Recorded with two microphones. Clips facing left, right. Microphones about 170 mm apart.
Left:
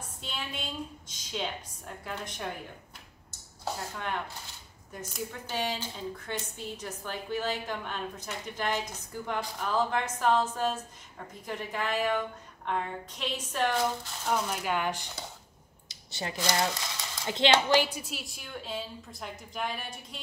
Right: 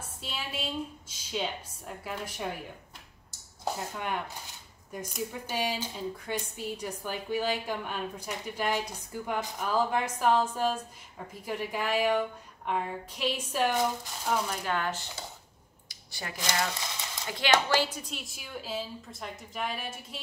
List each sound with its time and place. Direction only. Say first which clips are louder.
0.2 s a woman's voice: right 2 dB; 5° right (ahead or behind)
3.9 s a woman's voice: right 1 dB; 10° right (ahead or behind)
14.5 s speech: left 1 dB; 10° left (ahead or behind)
16.1 s speech: left 3 dB; 25° left (ahead or behind)
17.8 s a woman's voice: even; 10° left (ahead or behind)